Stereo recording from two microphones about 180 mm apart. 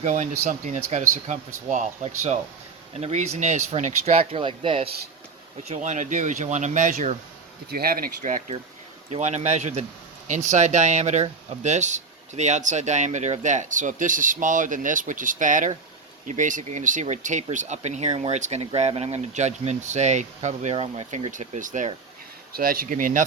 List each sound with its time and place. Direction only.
0.0 s speech: 40° right (ahead or behind)
5.6 s speech: 40° right (ahead or behind)
7.7 s speech: 55° right (ahead or behind)